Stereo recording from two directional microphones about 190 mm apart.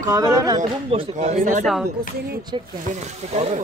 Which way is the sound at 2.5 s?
25° right (ahead or behind).